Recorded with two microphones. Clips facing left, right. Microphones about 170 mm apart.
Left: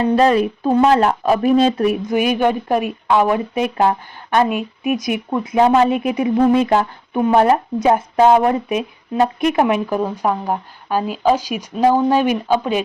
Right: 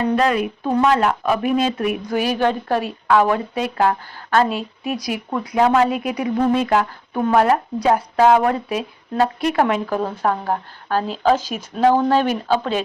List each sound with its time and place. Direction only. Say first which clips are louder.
0.0 s speech: left 4 dB; 30° left (ahead or behind)
2.0 s a woman's voice: left 3 dB; 20° left (ahead or behind)